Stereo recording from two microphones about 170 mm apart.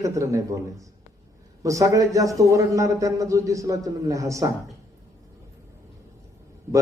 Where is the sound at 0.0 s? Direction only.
20° right (ahead or behind).